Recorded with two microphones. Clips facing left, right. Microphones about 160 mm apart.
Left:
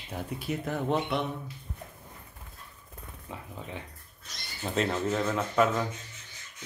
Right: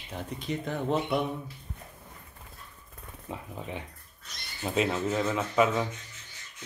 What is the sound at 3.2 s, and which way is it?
Speech, 20° right (ahead or behind).